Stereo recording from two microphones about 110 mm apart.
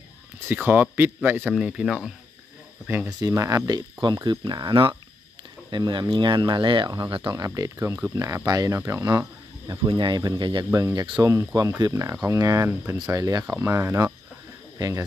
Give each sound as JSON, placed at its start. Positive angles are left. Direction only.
{"t": 0.5, "sound": "speech", "side_deg": -15}
{"t": 1.5, "sound": "speech", "side_deg": -10}
{"t": 3.1, "sound": "speech", "side_deg": -35}
{"t": 7.3, "sound": "speech", "side_deg": -35}